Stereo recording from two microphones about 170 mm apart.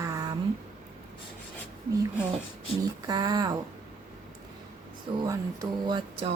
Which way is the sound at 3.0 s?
25° right (ahead or behind).